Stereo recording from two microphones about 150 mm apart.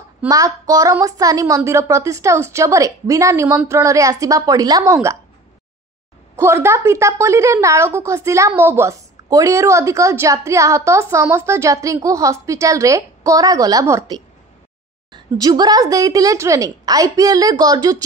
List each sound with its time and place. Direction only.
0.3 s a woman's voice: 25° right (ahead or behind)
6.3 s a woman's voice: 15° right (ahead or behind)